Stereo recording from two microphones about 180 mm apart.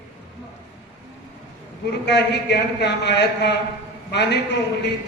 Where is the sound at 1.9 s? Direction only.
70° left (ahead or behind).